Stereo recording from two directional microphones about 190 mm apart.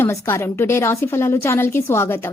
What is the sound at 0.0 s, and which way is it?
A woman's voice, 15° left (ahead or behind).